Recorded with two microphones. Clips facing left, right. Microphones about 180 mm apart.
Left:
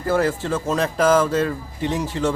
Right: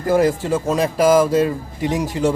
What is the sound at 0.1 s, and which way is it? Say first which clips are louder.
Speech: right 4 dB; 15° right (ahead or behind).